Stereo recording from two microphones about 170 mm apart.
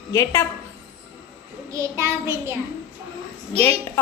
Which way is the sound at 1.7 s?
15° right (ahead or behind).